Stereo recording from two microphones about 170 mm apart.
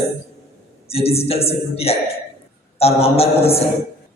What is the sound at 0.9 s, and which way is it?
A man's voice, 35° left (ahead or behind).